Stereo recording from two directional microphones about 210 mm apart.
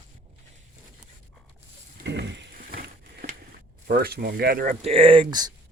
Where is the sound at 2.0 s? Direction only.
55° right (ahead or behind).